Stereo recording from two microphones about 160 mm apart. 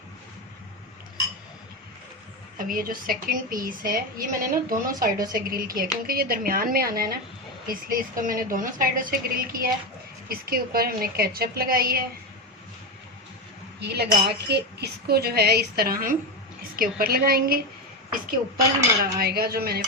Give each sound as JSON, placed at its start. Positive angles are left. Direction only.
{"t": 2.6, "sound": "a woman's voice", "side_deg": -60}
{"t": 13.7, "sound": "a woman's voice", "side_deg": -90}
{"t": 19.2, "sound": "a woman's voice", "side_deg": -75}